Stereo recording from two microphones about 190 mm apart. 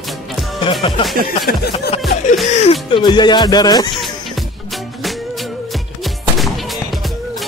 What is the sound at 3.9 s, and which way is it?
Music, centre (ahead or behind).